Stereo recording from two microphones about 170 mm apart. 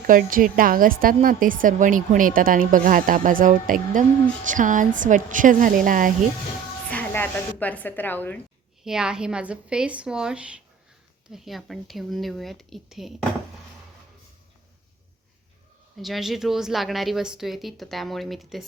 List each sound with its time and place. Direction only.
0.1 s a woman's voice: 55° right (ahead or behind)
6.9 s a woman's voice: 10° left (ahead or behind)
8.8 s a woman's voice: 5° right (ahead or behind)
16.0 s a woman's voice: centre (ahead or behind)